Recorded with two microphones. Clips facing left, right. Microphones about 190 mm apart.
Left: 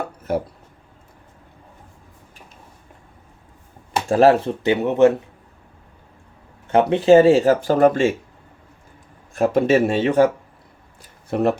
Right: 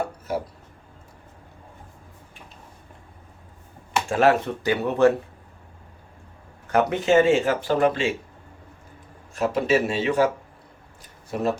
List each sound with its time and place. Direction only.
3.9 s speech: 35° left (ahead or behind)
6.7 s speech: 30° left (ahead or behind); by 8.1 s 45° left (ahead or behind)
9.3 s speech: 50° left (ahead or behind)
11.3 s speech: 60° left (ahead or behind)